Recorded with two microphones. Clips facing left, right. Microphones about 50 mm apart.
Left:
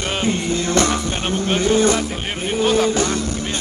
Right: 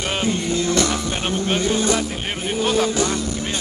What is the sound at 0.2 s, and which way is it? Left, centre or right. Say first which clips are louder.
Music: left 1 dB; left.